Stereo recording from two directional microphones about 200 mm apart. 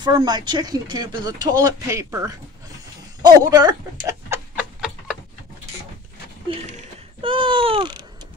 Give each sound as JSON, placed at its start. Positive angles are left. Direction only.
{"t": 0.0, "sound": "speech", "side_deg": -20}
{"t": 4.3, "sound": "a sound", "side_deg": -5}
{"t": 7.2, "sound": "speech", "side_deg": -25}